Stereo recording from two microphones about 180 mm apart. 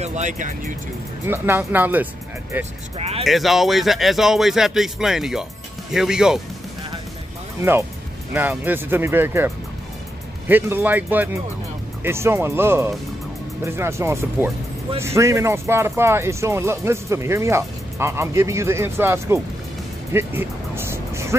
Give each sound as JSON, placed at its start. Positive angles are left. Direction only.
{"t": 0.0, "sound": "speech", "side_deg": -40}
{"t": 1.2, "sound": "speech", "side_deg": -10}
{"t": 3.0, "sound": "speech", "side_deg": -35}
{"t": 3.3, "sound": "speech", "side_deg": 0}
{"t": 8.3, "sound": "speech", "side_deg": -10}
{"t": 10.5, "sound": "speech", "side_deg": -10}
{"t": 20.1, "sound": "music", "side_deg": -15}